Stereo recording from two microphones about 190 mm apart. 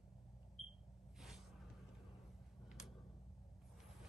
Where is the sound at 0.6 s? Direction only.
Centre (ahead or behind).